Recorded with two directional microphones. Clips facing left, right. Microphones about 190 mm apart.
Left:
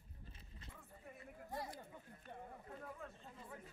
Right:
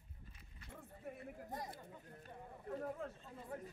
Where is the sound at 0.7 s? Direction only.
50° right (ahead or behind).